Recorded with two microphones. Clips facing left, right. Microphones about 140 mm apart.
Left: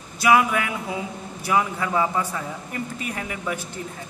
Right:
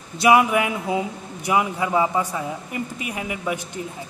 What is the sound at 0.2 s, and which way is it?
A man's voice, 20° right (ahead or behind).